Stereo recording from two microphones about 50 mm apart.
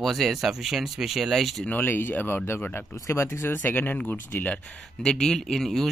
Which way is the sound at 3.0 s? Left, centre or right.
Left.